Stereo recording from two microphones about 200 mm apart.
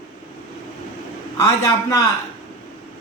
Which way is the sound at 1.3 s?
20° left (ahead or behind).